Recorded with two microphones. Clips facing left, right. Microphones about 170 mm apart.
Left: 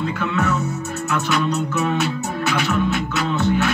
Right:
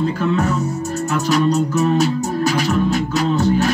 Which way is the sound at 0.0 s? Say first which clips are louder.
Right 4 dB; 35° right (ahead or behind).